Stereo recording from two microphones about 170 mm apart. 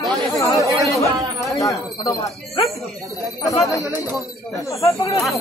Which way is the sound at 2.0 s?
20° left (ahead or behind).